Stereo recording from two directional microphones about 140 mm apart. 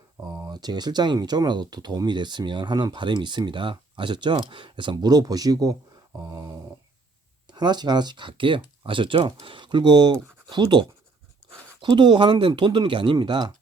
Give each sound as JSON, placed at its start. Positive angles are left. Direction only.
{"t": 0.2, "sound": "speech", "side_deg": -25}
{"t": 6.2, "sound": "a sound", "side_deg": -25}
{"t": 7.4, "sound": "speech", "side_deg": -30}